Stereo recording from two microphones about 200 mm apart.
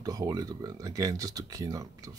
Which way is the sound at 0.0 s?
20° right (ahead or behind).